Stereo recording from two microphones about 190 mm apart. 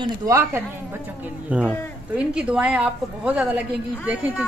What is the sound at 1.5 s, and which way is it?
A woman's voice, 5° right (ahead or behind).